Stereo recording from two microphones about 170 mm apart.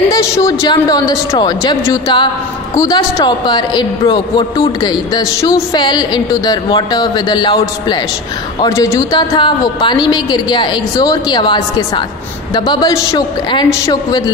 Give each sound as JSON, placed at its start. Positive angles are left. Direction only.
{"t": 0.1, "sound": "a man's voice", "side_deg": 20}
{"t": 9.4, "sound": "a man's voice", "side_deg": 25}